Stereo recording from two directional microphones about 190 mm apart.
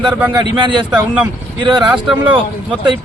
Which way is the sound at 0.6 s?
25° right (ahead or behind).